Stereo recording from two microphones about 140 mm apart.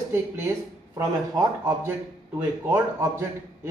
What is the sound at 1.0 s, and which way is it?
A man's voice, 25° right (ahead or behind).